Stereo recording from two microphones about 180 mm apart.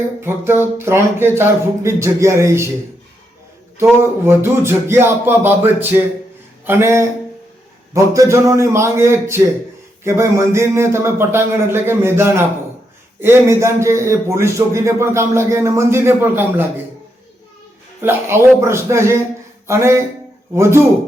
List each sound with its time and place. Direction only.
0.2 s a man's voice: 15° right (ahead or behind)
3.8 s a man's voice: 15° right (ahead or behind)
18.0 s a man's voice: 15° right (ahead or behind)